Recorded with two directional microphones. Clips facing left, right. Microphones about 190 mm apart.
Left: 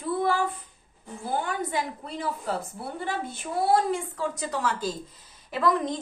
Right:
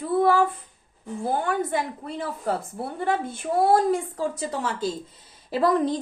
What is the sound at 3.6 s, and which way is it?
A woman's voice, 50° right (ahead or behind).